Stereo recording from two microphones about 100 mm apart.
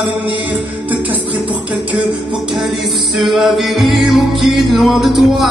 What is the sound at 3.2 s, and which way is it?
Music, centre (ahead or behind).